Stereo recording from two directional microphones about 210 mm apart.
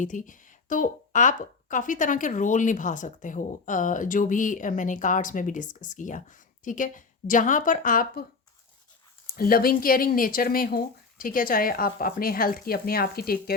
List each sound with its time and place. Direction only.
0.0 s speech: 35° left (ahead or behind)
9.2 s speech: 45° left (ahead or behind)